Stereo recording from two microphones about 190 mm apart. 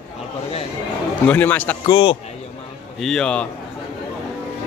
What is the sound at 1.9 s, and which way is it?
Speech, 25° left (ahead or behind).